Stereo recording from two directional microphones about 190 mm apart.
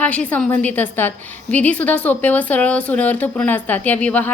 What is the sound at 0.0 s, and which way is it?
A woman's voice, 5° left (ahead or behind).